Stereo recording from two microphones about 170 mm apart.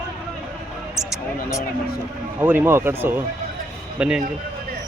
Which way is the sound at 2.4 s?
10° right (ahead or behind).